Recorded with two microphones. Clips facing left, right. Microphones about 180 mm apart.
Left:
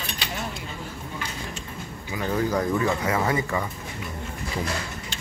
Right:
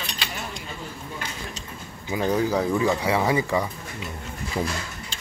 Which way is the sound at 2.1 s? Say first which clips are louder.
Right 4 dB; 25° right (ahead or behind).